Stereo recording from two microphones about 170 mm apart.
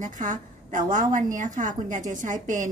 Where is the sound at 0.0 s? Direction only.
50° right (ahead or behind).